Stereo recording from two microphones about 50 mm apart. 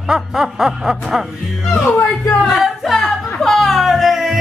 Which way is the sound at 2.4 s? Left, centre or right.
Centre.